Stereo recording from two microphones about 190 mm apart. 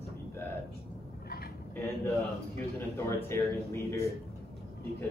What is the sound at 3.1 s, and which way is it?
Speech, 15° left (ahead or behind).